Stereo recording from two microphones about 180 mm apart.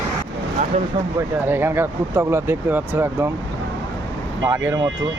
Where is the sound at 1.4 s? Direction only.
10° right (ahead or behind).